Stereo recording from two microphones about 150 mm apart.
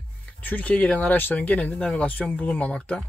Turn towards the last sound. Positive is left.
turn(degrees=5)  # may be behind; listen again after turning